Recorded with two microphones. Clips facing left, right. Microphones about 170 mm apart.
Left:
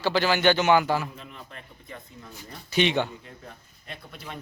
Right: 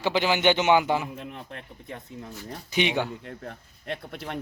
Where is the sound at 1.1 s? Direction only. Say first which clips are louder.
Right 5 dB; 65° right (ahead or behind).